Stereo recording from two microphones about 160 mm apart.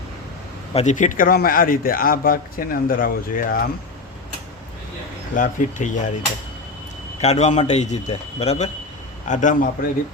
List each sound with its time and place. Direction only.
0.7 s speech: 45° left (ahead or behind); by 3.6 s 60° left (ahead or behind)
5.3 s speech: 55° left (ahead or behind)
7.2 s speech: 45° left (ahead or behind)